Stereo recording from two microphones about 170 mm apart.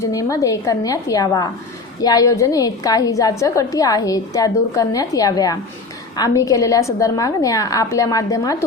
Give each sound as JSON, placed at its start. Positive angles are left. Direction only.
{"t": 0.0, "sound": "a woman's voice", "side_deg": 20}